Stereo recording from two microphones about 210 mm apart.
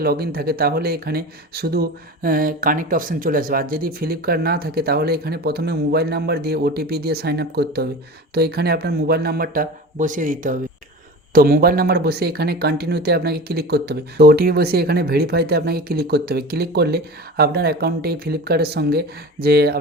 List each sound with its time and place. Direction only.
0.0 s speech: 45° right (ahead or behind)